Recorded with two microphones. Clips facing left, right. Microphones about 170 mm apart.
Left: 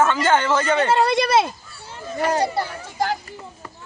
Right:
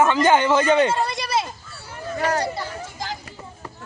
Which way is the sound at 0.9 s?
70° left (ahead or behind).